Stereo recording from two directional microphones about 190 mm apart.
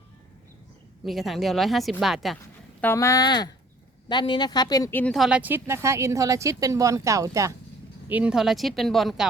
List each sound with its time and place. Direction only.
1.0 s a woman's voice: centre (ahead or behind)
2.8 s speech: 15° left (ahead or behind); by 7.5 s 15° right (ahead or behind)
8.1 s a woman's voice: 5° right (ahead or behind)